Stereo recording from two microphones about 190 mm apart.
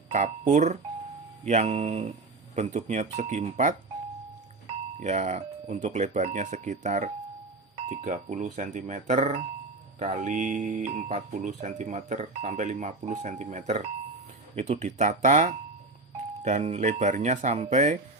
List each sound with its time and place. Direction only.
0.1 s speech: 40° right (ahead or behind)
4.9 s speech: 40° right (ahead or behind)